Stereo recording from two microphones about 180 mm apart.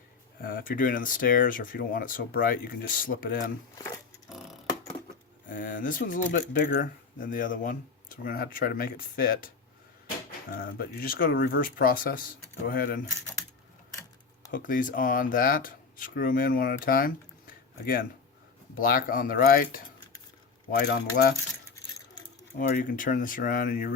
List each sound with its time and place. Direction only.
0.4 s speech: 50° left (ahead or behind)
4.3 s a sound: centre (ahead or behind)
5.5 s speech: 50° left (ahead or behind)
10.5 s speech: 55° left (ahead or behind)
14.5 s speech: 50° left (ahead or behind)
22.5 s speech: 50° left (ahead or behind)